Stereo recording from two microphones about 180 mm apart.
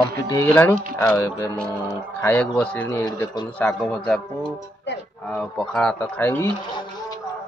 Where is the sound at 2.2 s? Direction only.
10° left (ahead or behind).